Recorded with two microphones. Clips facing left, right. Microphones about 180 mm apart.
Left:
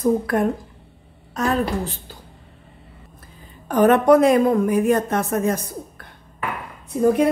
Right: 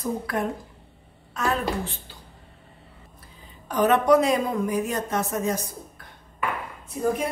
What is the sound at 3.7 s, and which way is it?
Speech, 50° left (ahead or behind).